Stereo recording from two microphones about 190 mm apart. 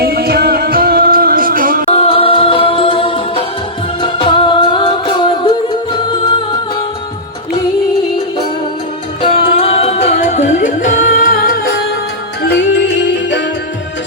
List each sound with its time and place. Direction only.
0.0 s music: 55° right (ahead or behind)
1.9 s music: 30° left (ahead or behind)
9.2 s music: 30° left (ahead or behind); by 13.4 s 65° left (ahead or behind)